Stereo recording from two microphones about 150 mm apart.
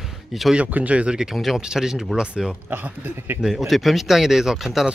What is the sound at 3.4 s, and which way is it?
Speech, centre (ahead or behind).